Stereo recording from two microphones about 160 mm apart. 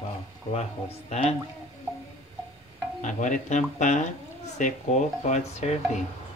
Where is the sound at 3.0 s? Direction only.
50° left (ahead or behind).